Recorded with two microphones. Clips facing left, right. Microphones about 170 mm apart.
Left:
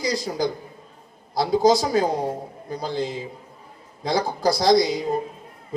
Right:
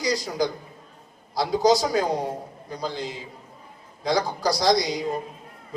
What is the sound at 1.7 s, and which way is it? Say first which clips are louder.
Speech: even; 25° left (ahead or behind).